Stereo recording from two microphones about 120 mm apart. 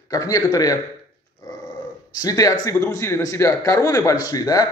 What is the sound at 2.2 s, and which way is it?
A man's voice, 30° left (ahead or behind).